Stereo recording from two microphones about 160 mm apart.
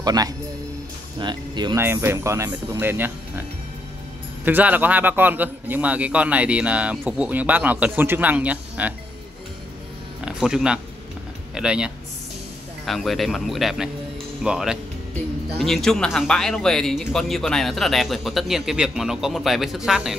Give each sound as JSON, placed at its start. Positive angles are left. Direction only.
{"t": 0.0, "sound": "speech", "side_deg": -25}
{"t": 1.8, "sound": "a man's voice", "side_deg": -15}
{"t": 4.5, "sound": "a man's voice", "side_deg": -10}
{"t": 10.2, "sound": "speech", "side_deg": -5}